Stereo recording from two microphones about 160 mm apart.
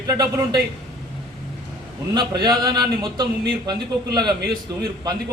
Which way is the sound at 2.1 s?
25° right (ahead or behind).